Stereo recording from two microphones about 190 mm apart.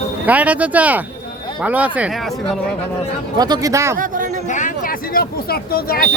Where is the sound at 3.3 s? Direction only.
20° right (ahead or behind).